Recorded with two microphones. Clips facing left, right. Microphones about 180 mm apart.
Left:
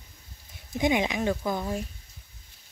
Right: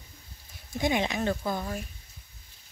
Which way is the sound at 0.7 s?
15° left (ahead or behind).